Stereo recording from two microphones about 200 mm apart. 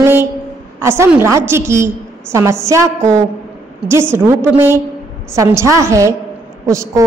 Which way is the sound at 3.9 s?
10° right (ahead or behind).